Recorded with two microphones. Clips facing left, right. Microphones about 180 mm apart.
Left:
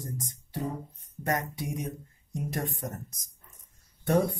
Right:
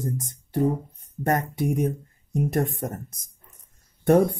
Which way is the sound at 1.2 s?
55° right (ahead or behind).